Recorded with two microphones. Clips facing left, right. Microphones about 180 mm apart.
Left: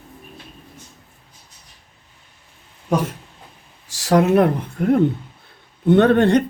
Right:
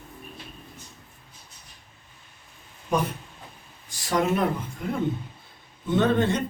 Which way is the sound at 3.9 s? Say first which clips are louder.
Left 9 dB; 75° left (ahead or behind).